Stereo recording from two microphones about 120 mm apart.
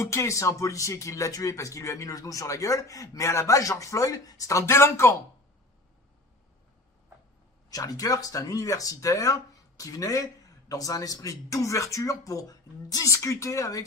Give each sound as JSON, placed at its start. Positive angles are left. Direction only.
{"t": 0.0, "sound": "speech", "side_deg": 25}
{"t": 7.7, "sound": "speech", "side_deg": 30}